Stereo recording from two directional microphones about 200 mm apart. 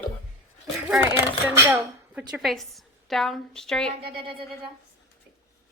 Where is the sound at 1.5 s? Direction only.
10° right (ahead or behind).